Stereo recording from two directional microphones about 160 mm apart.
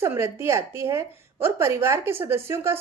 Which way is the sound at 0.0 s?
15° right (ahead or behind).